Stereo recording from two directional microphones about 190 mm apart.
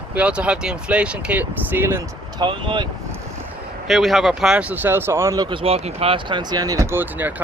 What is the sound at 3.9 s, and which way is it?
Speech, centre (ahead or behind).